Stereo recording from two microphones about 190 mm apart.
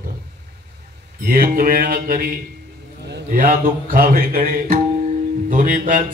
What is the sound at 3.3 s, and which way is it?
A man's voice, 45° right (ahead or behind).